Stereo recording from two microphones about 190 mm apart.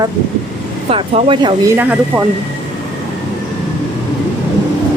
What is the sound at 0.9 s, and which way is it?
Speech, 25° right (ahead or behind).